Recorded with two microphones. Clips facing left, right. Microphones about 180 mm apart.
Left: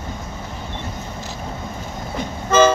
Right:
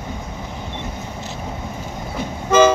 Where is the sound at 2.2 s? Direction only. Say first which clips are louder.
Right 1 dB; 10° right (ahead or behind).